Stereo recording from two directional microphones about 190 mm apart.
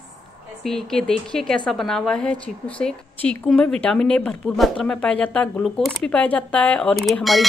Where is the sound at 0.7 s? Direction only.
Centre (ahead or behind).